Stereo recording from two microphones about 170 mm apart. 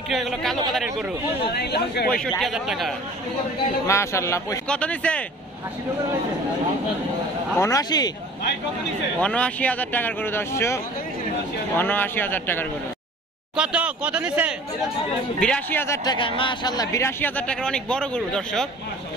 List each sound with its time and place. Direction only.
0.1 s speech: centre (ahead or behind)
1.5 s speech: 75° left (ahead or behind)
2.0 s speech: 5° left (ahead or behind)
3.8 s a man's voice: 15° left (ahead or behind)
4.6 s a man's voice: 5° left (ahead or behind)
7.5 s speech: 15° left (ahead or behind)
9.2 s a man's voice: 5° left (ahead or behind)
13.6 s speech: 5° right (ahead or behind)
15.4 s a man's voice: 10° left (ahead or behind)